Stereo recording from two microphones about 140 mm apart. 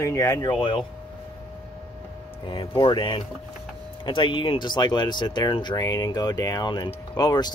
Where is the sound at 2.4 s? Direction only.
35° left (ahead or behind).